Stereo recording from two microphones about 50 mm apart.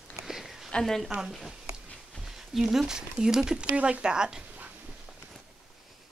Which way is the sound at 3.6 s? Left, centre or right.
Right.